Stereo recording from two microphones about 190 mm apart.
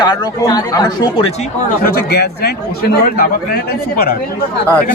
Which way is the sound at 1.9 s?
55° left (ahead or behind).